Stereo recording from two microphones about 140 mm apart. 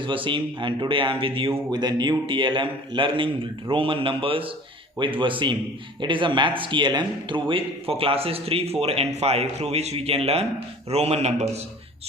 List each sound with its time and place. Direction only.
0.0 s a man's voice: 35° right (ahead or behind); by 11.6 s 55° right (ahead or behind)